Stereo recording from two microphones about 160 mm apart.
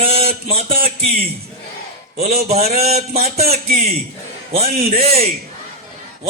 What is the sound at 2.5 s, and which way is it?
Speech, 40° right (ahead or behind).